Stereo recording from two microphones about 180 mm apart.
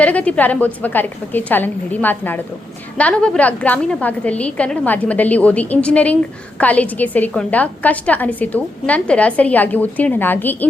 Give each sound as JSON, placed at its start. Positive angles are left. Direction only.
{"t": 0.0, "sound": "a woman's voice", "side_deg": 10}